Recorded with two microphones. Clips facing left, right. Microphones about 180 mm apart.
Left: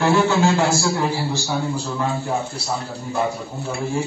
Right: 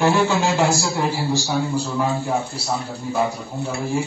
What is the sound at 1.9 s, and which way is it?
A man's voice, centre (ahead or behind).